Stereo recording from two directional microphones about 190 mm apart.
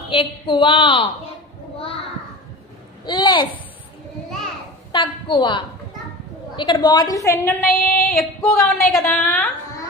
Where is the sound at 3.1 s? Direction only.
25° left (ahead or behind).